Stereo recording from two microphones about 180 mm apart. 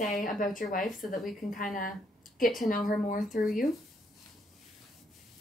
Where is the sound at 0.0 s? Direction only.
45° left (ahead or behind).